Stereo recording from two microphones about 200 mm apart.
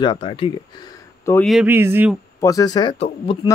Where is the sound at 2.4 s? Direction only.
15° left (ahead or behind).